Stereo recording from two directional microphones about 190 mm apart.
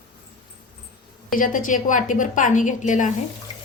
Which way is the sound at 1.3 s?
45° left (ahead or behind).